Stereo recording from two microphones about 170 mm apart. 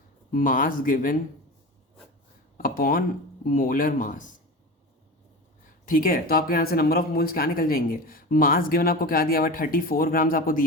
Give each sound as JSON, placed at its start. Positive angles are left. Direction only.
{"t": 0.3, "sound": "speech", "side_deg": 55}
{"t": 2.6, "sound": "speech", "side_deg": 55}
{"t": 5.8, "sound": "speech", "side_deg": 55}